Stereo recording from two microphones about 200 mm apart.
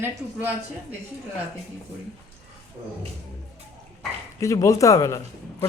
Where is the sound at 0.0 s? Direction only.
10° right (ahead or behind).